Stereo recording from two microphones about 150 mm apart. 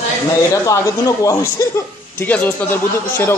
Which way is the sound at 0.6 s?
20° left (ahead or behind).